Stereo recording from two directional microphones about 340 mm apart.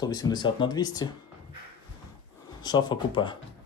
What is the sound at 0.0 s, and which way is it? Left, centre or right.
Speech, centre.